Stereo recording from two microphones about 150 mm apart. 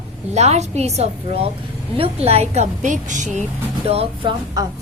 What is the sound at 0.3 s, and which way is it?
A woman's voice, 45° right (ahead or behind).